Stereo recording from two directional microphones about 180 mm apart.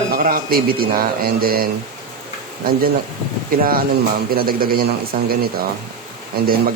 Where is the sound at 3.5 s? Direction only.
55° right (ahead or behind).